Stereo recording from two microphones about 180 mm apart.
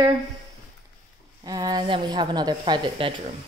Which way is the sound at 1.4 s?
20° right (ahead or behind).